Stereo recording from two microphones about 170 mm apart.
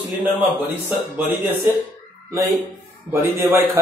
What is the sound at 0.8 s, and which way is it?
Mantra, 10° right (ahead or behind).